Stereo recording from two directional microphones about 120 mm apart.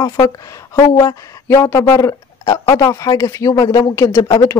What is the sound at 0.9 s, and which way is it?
Speech, 25° left (ahead or behind).